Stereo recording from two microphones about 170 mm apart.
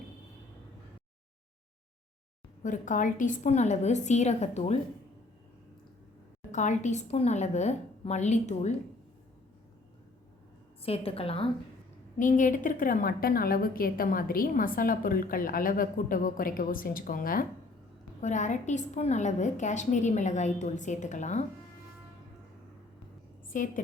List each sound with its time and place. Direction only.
2.6 s a woman's voice: 50° left (ahead or behind)
6.5 s a woman's voice: 45° left (ahead or behind)
10.8 s a woman's voice: 35° left (ahead or behind)
12.2 s a woman's voice: 50° left (ahead or behind)
23.5 s a woman's voice: 50° left (ahead or behind)